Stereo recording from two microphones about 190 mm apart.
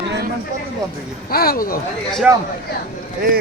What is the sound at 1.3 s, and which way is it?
Speech, 50° left (ahead or behind).